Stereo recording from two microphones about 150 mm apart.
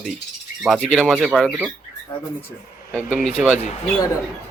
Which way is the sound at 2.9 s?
5° left (ahead or behind).